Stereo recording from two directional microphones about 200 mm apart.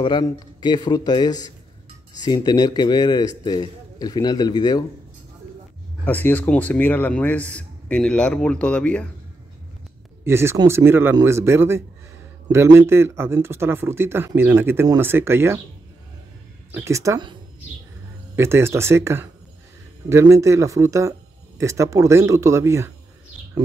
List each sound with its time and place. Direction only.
0.0 s a man's voice: 20° left (ahead or behind)
6.0 s a man's voice: 10° left (ahead or behind)
10.2 s speech: 10° right (ahead or behind)
16.7 s speech: 15° right (ahead or behind)